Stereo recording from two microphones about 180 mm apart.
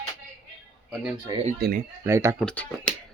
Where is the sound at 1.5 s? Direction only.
65° right (ahead or behind).